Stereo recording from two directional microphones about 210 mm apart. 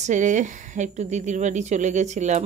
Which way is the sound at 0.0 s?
35° right (ahead or behind).